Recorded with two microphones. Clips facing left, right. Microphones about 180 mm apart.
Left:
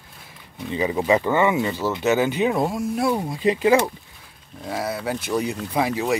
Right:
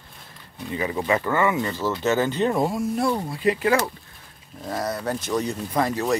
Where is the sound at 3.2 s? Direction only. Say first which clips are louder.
Left 2 dB; 20° left (ahead or behind).